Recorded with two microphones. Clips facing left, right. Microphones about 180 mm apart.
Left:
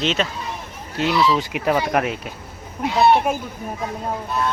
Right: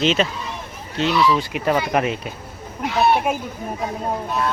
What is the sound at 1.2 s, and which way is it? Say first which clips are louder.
Speech: even; 20° left (ahead or behind).